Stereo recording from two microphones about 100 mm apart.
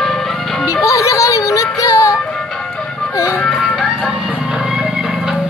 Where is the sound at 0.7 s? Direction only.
30° left (ahead or behind).